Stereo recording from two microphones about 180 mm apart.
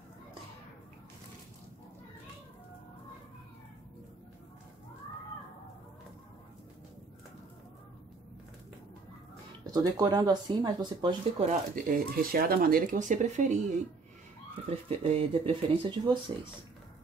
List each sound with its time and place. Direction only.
9.7 s speech: 20° right (ahead or behind)
11.4 s speech: 50° right (ahead or behind)
14.9 s speech: 35° right (ahead or behind)